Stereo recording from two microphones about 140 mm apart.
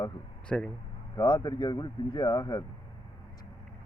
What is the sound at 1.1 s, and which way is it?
Speech, 30° left (ahead or behind).